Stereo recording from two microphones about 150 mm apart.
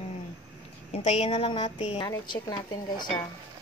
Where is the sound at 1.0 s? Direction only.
45° left (ahead or behind).